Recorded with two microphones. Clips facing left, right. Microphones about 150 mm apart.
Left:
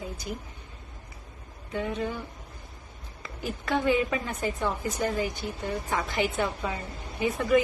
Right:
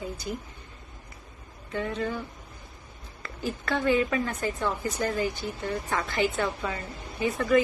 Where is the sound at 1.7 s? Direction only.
10° left (ahead or behind).